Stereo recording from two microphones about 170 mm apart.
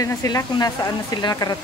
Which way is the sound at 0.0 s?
20° left (ahead or behind).